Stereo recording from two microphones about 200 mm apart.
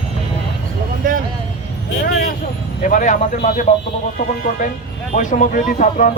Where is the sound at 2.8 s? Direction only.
40° left (ahead or behind).